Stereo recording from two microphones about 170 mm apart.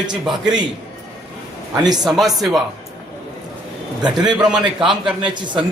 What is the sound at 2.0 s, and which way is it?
Speech, centre (ahead or behind).